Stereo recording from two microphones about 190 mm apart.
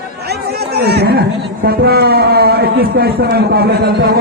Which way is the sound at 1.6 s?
55° right (ahead or behind).